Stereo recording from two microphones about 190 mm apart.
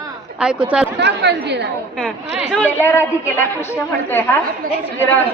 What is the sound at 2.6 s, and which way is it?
A woman's voice, 10° left (ahead or behind).